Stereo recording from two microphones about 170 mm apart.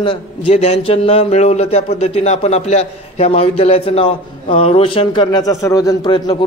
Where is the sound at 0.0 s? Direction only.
30° left (ahead or behind).